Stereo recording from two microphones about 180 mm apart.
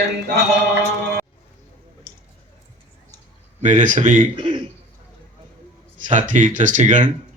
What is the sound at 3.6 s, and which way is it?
Speech, 45° right (ahead or behind).